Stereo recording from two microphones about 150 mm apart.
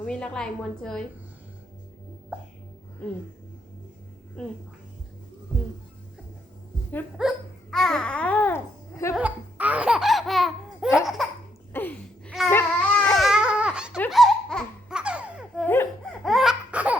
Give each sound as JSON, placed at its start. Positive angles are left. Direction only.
{"t": 0.0, "sound": "laughter", "side_deg": 5}
{"t": 7.2, "sound": "speech", "side_deg": 0}
{"t": 9.1, "sound": "laughter", "side_deg": -10}
{"t": 11.7, "sound": "a sound", "side_deg": 10}
{"t": 12.5, "sound": "baby cry", "side_deg": 15}
{"t": 13.1, "sound": "baby cry", "side_deg": -5}
{"t": 14.1, "sound": "baby laughter", "side_deg": 0}
{"t": 15.6, "sound": "laughter", "side_deg": 15}
{"t": 16.2, "sound": "laughter", "side_deg": 0}